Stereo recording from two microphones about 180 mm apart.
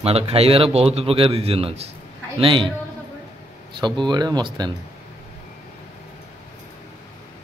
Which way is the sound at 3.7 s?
25° right (ahead or behind).